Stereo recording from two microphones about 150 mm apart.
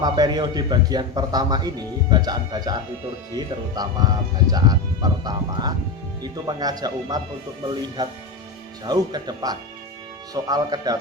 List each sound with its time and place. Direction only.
0.0 s speech: 25° right (ahead or behind)